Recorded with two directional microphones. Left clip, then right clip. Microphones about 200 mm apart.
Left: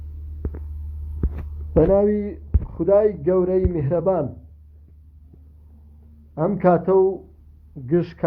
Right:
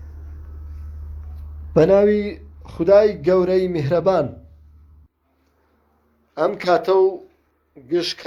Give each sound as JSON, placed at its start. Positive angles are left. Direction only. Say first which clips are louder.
{"t": 1.7, "sound": "speech", "louder": "right 3 dB", "side_deg": -30}
{"t": 6.3, "sound": "speech", "louder": "right 1 dB", "side_deg": -30}